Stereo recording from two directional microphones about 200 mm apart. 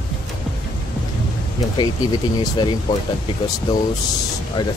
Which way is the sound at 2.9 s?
20° left (ahead or behind).